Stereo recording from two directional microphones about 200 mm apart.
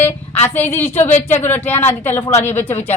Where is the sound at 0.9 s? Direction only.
35° left (ahead or behind).